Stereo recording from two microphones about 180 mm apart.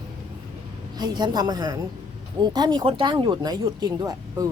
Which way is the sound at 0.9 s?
25° right (ahead or behind).